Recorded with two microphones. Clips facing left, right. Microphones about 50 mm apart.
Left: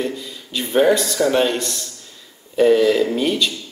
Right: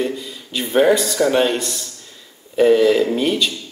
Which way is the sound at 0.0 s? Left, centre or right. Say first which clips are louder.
Right 2 dB; centre.